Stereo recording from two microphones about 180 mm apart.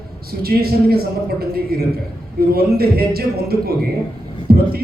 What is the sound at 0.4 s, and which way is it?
A man's voice, 60° right (ahead or behind).